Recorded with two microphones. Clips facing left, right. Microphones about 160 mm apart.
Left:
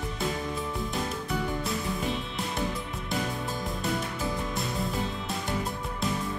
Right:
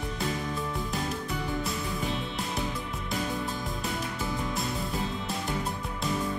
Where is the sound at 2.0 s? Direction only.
Centre (ahead or behind).